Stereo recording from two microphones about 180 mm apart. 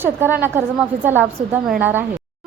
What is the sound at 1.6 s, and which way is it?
Speech, 5° right (ahead or behind).